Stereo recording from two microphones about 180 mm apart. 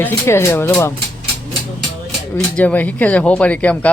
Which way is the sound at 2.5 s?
10° left (ahead or behind).